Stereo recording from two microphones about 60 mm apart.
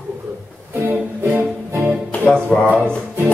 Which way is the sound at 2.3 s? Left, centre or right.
Centre.